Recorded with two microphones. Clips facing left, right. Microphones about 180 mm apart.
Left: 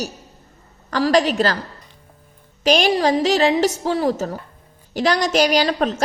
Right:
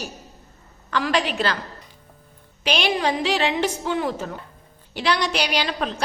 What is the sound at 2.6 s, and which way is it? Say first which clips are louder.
A woman's voice: left 6 dB; 40° left (ahead or behind).